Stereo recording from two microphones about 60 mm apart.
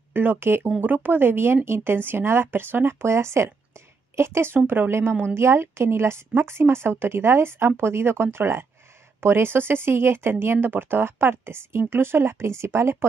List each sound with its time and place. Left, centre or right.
0.1 s a woman's voice: right